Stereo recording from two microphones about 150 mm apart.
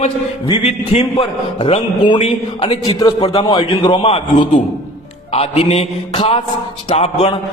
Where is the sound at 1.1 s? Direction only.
35° left (ahead or behind).